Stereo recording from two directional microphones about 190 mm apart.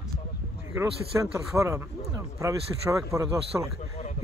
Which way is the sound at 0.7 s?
15° right (ahead or behind).